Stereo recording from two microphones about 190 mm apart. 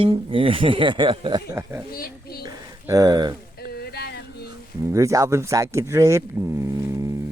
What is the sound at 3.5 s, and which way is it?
Boat, 55° left (ahead or behind).